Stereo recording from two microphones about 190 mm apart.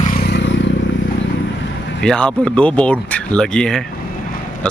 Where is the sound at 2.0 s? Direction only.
5° left (ahead or behind).